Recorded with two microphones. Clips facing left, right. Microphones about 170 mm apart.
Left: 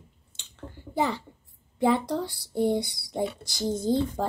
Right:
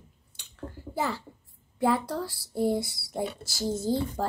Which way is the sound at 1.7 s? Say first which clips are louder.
Left 2 dB; 20° left (ahead or behind).